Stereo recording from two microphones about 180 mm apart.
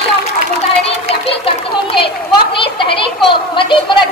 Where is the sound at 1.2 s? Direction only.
30° left (ahead or behind).